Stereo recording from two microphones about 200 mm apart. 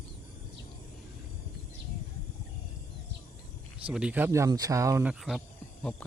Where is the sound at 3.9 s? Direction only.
5° right (ahead or behind).